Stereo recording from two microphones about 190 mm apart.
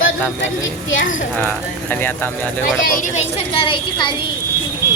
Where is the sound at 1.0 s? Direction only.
45° left (ahead or behind).